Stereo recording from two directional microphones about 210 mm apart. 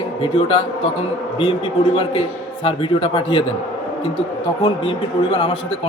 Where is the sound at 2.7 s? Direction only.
25° left (ahead or behind).